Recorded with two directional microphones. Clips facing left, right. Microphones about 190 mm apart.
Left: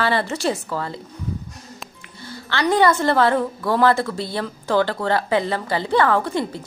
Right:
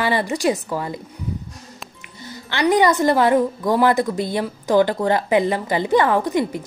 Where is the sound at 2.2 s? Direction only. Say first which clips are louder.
Right 2 dB; 15° right (ahead or behind).